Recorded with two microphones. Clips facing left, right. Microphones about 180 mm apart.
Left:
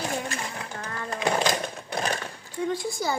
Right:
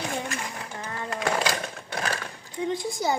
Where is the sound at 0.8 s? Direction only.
5° right (ahead or behind).